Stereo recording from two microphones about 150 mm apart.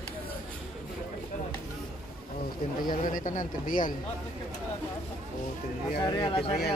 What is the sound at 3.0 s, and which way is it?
Speech, 60° left (ahead or behind).